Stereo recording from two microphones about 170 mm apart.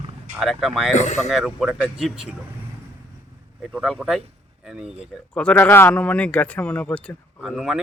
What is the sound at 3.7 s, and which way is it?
Speech, 5° right (ahead or behind).